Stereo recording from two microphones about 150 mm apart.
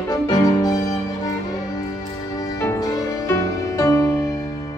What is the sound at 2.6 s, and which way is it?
Music, 15° left (ahead or behind).